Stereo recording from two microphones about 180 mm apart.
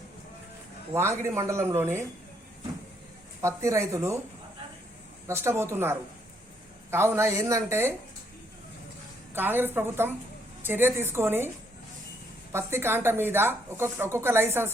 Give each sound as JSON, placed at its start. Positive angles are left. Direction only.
{"t": 0.9, "sound": "speech", "side_deg": -15}
{"t": 3.4, "sound": "speech", "side_deg": -15}
{"t": 5.3, "sound": "speech", "side_deg": -15}
{"t": 9.3, "sound": "speech", "side_deg": -10}